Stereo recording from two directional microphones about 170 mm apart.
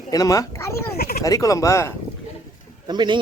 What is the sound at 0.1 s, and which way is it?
Speech, 20° left (ahead or behind).